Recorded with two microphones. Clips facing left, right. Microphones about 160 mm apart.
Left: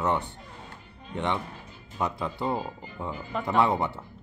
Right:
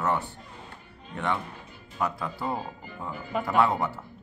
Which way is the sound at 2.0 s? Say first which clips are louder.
Left 1 dB; 25° left (ahead or behind).